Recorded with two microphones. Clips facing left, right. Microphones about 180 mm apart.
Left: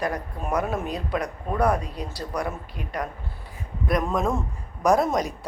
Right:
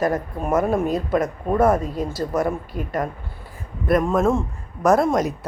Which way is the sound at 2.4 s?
45° right (ahead or behind).